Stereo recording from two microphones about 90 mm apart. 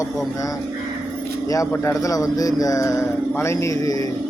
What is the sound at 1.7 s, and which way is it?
Speech, 30° left (ahead or behind).